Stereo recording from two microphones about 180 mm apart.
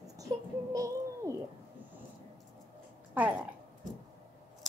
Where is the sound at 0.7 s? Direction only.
20° right (ahead or behind).